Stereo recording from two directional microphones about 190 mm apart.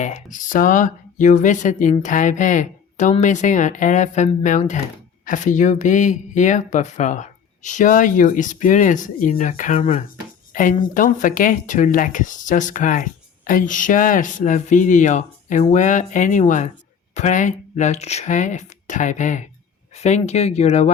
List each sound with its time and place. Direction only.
0.0 s speech: 40° left (ahead or behind)